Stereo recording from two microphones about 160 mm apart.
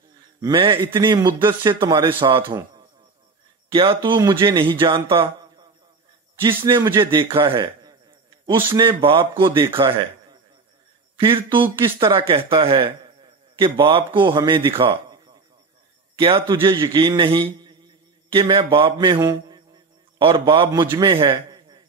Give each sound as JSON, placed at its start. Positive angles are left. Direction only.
{"t": 0.4, "sound": "speech", "side_deg": -30}
{"t": 4.0, "sound": "speech", "side_deg": -30}
{"t": 6.4, "sound": "speech", "side_deg": -25}
{"t": 7.1, "sound": "speech", "side_deg": -30}
{"t": 11.1, "sound": "a man's voice", "side_deg": -35}
{"t": 14.8, "sound": "a sound", "side_deg": -30}
{"t": 16.2, "sound": "speech", "side_deg": -35}
{"t": 18.9, "sound": "mantra", "side_deg": -30}
{"t": 20.2, "sound": "a man's voice", "side_deg": -30}